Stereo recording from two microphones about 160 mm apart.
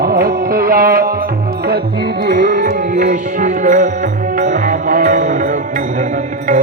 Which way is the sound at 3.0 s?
50° right (ahead or behind).